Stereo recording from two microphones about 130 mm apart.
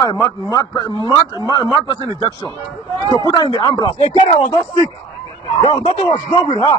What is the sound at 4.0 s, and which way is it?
Speech, 60° left (ahead or behind).